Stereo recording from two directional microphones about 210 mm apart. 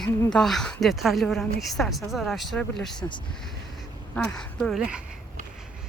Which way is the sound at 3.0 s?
20° left (ahead or behind).